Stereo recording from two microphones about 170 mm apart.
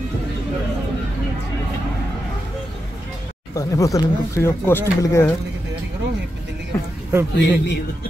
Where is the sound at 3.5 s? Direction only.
20° left (ahead or behind).